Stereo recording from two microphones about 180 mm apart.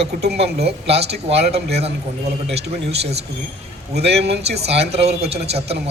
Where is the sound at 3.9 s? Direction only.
70° right (ahead or behind).